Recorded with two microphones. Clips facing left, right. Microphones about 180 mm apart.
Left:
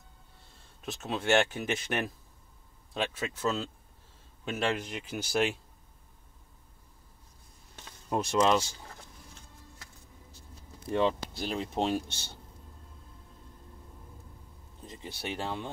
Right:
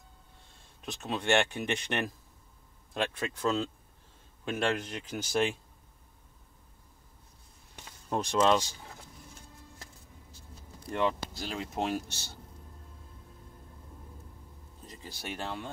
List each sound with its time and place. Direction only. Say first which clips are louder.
0.8 s speech: left 1 dB; 5° left (ahead or behind)
8.1 s speech: even; 10° left (ahead or behind)
11.0 s speech: left 2 dB; 25° left (ahead or behind)
14.9 s speech: left 3 dB; 20° left (ahead or behind)